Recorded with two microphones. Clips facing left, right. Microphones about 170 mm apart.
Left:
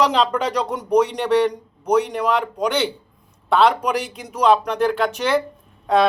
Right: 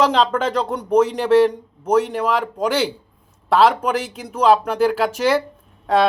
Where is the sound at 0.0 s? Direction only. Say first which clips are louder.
Right 1 dB; centre (ahead or behind).